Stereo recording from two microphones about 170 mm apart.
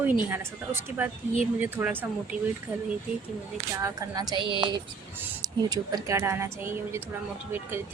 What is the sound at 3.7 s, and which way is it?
Speech, 20° right (ahead or behind).